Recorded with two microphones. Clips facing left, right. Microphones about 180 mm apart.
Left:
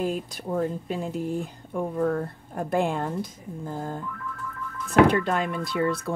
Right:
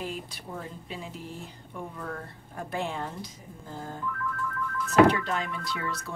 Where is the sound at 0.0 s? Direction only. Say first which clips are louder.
Left 8 dB; 45° left (ahead or behind).